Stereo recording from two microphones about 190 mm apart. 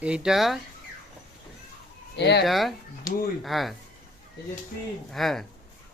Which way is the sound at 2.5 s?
Centre (ahead or behind).